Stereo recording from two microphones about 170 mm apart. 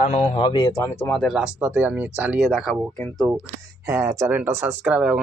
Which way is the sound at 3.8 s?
15° right (ahead or behind).